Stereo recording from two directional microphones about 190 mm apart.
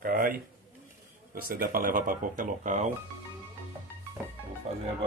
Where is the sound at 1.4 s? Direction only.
50° right (ahead or behind).